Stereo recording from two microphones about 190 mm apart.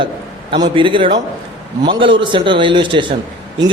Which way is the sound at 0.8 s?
25° right (ahead or behind).